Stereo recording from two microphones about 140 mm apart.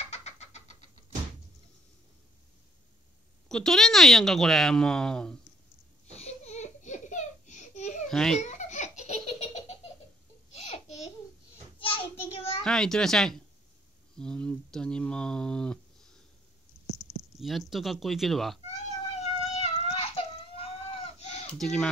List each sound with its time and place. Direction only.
0.0 s vehicle: 50° left (ahead or behind)
3.4 s speech: 5° left (ahead or behind)
6.0 s a sound: 50° left (ahead or behind)
8.1 s a child's voice: 5° left (ahead or behind)
8.4 s baby laughter: 55° left (ahead or behind)
11.8 s child singing: 40° left (ahead or behind)
12.6 s speech: 5° left (ahead or behind)
17.2 s speech: centre (ahead or behind)
18.7 s cat: 55° left (ahead or behind)
21.5 s speech: 5° left (ahead or behind)